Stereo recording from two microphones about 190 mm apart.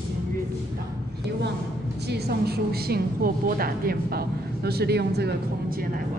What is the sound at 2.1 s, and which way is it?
A woman's voice, 55° right (ahead or behind).